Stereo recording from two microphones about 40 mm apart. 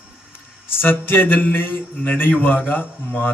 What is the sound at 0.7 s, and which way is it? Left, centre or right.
A man's voice, left.